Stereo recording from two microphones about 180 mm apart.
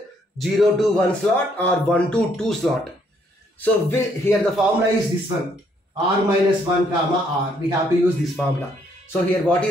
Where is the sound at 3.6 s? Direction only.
15° left (ahead or behind).